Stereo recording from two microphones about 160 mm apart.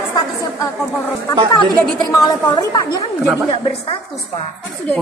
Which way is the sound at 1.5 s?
25° left (ahead or behind).